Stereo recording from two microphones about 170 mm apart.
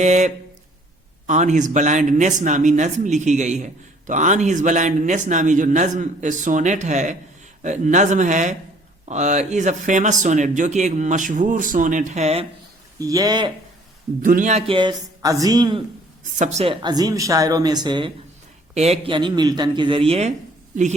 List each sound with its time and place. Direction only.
0.0 s speech: 45° right (ahead or behind)
13.0 s a woman's voice: 20° right (ahead or behind)
14.2 s speech: 50° right (ahead or behind)
14.7 s a woman's voice: 25° right (ahead or behind)
16.4 s a woman's voice: 40° right (ahead or behind)
18.7 s a woman's voice: 40° right (ahead or behind)